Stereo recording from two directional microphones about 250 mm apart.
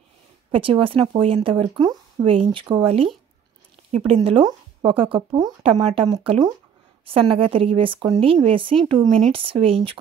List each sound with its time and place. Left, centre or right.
0.5 s speech: right